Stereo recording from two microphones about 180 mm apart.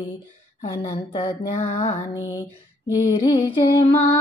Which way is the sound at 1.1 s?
30° left (ahead or behind).